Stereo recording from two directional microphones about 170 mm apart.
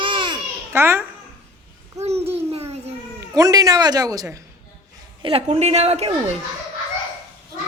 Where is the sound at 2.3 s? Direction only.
35° right (ahead or behind).